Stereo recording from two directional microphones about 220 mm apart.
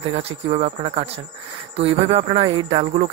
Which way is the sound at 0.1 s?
30° right (ahead or behind).